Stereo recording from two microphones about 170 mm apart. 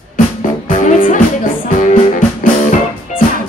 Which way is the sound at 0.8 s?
50° left (ahead or behind).